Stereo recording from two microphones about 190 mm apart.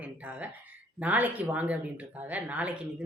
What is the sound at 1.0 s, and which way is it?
Speech, 10° right (ahead or behind).